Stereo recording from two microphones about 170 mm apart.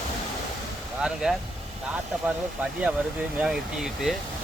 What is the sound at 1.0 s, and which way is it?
Speech, 5° right (ahead or behind).